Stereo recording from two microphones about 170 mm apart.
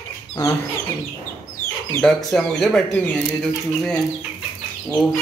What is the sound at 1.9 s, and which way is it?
Speech, 5° left (ahead or behind).